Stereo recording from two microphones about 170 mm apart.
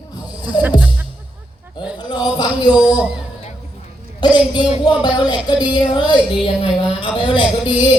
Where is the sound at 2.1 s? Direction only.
25° left (ahead or behind).